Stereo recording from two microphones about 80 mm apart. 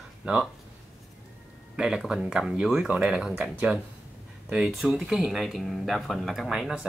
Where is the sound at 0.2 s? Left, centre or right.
Centre.